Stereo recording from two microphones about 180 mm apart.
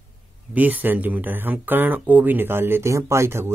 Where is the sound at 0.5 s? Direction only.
10° right (ahead or behind).